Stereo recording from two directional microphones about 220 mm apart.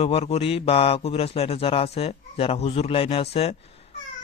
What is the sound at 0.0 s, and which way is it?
Speech, 30° left (ahead or behind).